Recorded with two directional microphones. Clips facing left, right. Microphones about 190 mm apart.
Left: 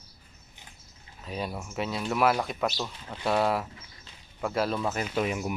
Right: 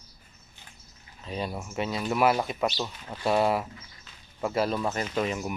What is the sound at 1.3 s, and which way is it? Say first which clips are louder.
Speech: right 1 dB; centre (ahead or behind).